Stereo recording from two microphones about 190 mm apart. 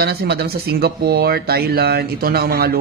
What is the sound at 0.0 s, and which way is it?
Speech, 55° right (ahead or behind).